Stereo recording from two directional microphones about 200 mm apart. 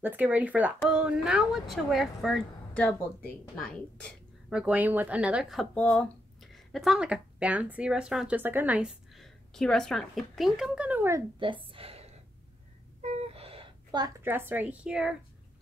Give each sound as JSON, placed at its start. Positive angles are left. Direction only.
{"t": 0.0, "sound": "a woman's voice", "side_deg": -10}
{"t": 11.3, "sound": "a sound", "side_deg": -25}
{"t": 13.3, "sound": "a woman's voice", "side_deg": -30}